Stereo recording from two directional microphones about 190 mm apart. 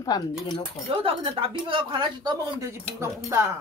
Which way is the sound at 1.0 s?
30° right (ahead or behind).